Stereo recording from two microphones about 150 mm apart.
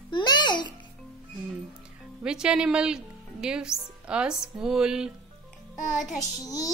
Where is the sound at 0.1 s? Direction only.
30° left (ahead or behind).